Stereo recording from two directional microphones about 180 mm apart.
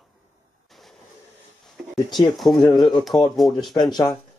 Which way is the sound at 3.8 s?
25° left (ahead or behind).